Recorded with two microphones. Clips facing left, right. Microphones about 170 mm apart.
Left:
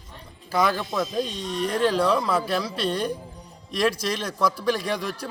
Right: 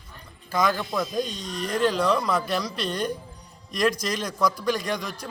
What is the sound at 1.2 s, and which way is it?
Speech, 30° left (ahead or behind).